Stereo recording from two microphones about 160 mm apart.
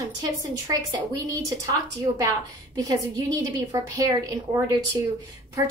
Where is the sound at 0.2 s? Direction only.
20° right (ahead or behind).